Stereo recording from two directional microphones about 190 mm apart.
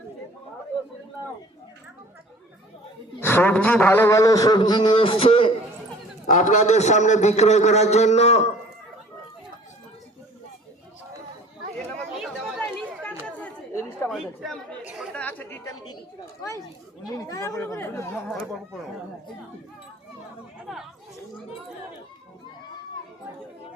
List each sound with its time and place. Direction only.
3.2 s a man's voice: 10° left (ahead or behind); by 5.5 s 30° left (ahead or behind)
6.2 s a man's voice: 40° left (ahead or behind)
11.9 s chatter: 5° left (ahead or behind)
17.2 s speech: 15° left (ahead or behind)
18.1 s speech: centre (ahead or behind)
20.7 s speech: centre (ahead or behind)